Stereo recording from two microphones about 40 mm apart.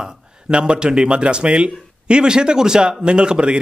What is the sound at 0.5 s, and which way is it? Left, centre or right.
Speech, right.